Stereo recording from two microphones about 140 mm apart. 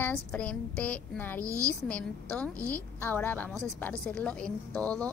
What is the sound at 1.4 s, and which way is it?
Speech, 20° right (ahead or behind).